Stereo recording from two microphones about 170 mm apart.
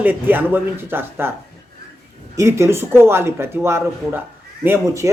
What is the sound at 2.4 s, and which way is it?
Speech, 15° right (ahead or behind).